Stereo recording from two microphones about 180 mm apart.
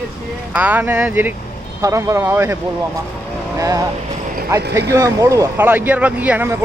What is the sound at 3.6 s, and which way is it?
Speech, 20° right (ahead or behind).